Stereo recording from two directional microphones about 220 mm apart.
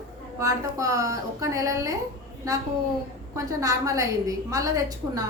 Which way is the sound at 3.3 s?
15° right (ahead or behind).